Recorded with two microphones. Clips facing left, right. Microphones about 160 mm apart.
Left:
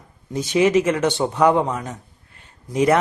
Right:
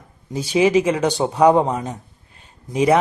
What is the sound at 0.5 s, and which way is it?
A man's voice, 10° right (ahead or behind).